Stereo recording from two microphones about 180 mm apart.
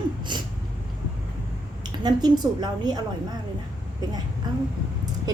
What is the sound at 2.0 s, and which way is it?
A woman's voice, 25° right (ahead or behind).